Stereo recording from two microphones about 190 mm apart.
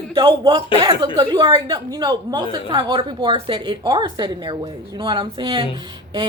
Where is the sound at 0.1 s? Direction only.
25° right (ahead or behind).